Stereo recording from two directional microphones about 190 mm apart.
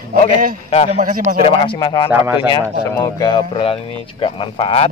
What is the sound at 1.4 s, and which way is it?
Speech, 25° left (ahead or behind).